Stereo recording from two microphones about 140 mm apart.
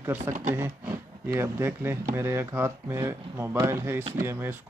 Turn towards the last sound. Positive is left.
turn(degrees=-15)  # may be behind; listen again after turning